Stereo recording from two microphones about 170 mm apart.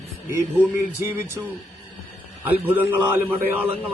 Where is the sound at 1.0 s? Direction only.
15° right (ahead or behind).